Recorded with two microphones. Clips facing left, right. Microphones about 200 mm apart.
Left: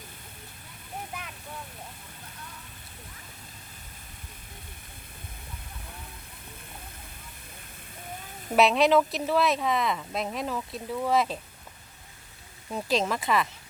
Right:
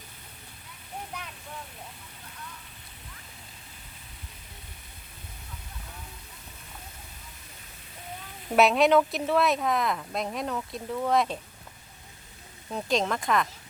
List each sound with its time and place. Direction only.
8.5 s speech: centre (ahead or behind)
12.7 s speech: 5° left (ahead or behind)